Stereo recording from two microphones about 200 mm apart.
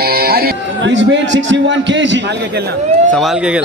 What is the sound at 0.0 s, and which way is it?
Speech, 50° right (ahead or behind).